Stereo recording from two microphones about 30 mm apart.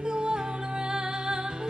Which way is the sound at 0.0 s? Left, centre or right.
Right.